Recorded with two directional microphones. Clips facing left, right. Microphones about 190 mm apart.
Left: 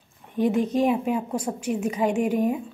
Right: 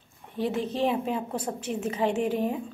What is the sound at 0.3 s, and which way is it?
A woman's voice, 15° left (ahead or behind).